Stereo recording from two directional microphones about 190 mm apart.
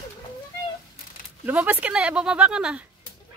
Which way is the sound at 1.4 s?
10° right (ahead or behind).